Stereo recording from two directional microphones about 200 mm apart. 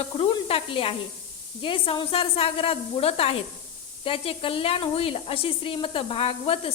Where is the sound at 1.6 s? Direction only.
25° left (ahead or behind).